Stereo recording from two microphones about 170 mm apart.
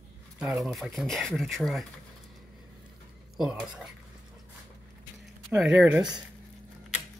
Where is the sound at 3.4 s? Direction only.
5° right (ahead or behind).